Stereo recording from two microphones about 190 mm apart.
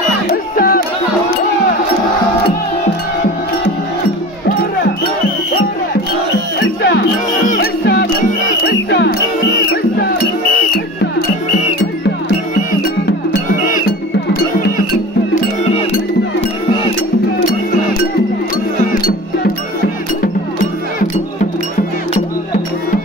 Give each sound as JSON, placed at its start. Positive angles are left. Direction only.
{"t": 0.3, "sound": "music", "side_deg": 50}
{"t": 6.6, "sound": "music", "side_deg": 60}
{"t": 7.4, "sound": "music", "side_deg": 45}
{"t": 7.8, "sound": "music", "side_deg": 60}
{"t": 13.7, "sound": "music", "side_deg": 50}
{"t": 18.9, "sound": "music", "side_deg": 50}